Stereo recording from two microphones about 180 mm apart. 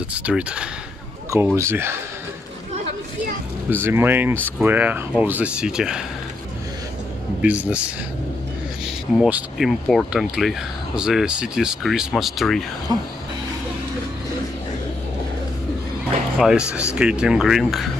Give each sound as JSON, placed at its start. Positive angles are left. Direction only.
{"t": 0.1, "sound": "speech", "side_deg": -5}
{"t": 3.7, "sound": "speech", "side_deg": -10}
{"t": 7.4, "sound": "speech", "side_deg": -10}
{"t": 9.1, "sound": "speech", "side_deg": 0}
{"t": 12.9, "sound": "speech", "side_deg": -20}
{"t": 16.3, "sound": "speech", "side_deg": 0}